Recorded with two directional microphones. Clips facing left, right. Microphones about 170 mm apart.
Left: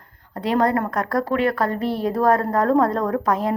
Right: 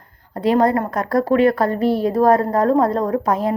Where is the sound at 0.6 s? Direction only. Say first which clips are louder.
Right 3 dB; 25° right (ahead or behind).